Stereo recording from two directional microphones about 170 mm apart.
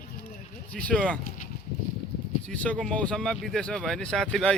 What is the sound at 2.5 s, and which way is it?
Speech, 5° left (ahead or behind).